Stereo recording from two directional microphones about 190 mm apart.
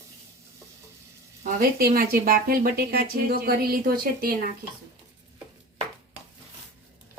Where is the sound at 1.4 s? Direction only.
50° right (ahead or behind).